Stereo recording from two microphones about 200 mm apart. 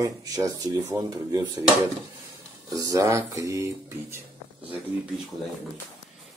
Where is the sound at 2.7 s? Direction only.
15° right (ahead or behind).